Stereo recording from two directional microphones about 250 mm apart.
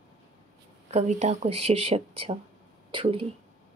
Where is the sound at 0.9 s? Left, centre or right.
Right.